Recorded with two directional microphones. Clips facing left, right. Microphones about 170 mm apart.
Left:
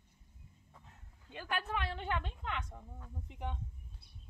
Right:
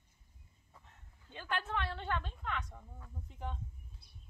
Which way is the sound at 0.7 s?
5° left (ahead or behind).